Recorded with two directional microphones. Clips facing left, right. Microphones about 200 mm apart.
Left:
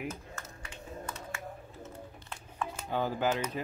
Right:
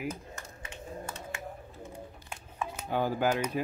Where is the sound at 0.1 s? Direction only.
15° right (ahead or behind).